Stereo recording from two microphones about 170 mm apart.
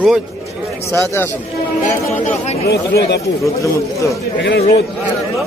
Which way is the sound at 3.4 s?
20° left (ahead or behind).